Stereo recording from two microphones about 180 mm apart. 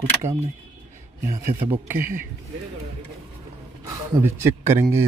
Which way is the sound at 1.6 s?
10° right (ahead or behind).